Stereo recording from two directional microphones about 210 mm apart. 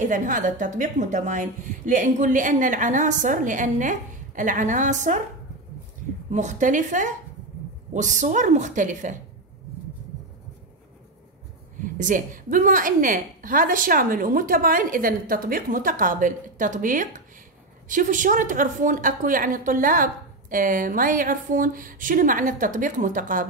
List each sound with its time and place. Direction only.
0.0 s a woman's voice: 40° right (ahead or behind)
6.3 s a woman's voice: 35° right (ahead or behind)
11.8 s a woman's voice: 40° right (ahead or behind)